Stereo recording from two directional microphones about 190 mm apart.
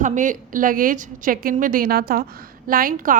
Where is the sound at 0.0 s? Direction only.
40° right (ahead or behind).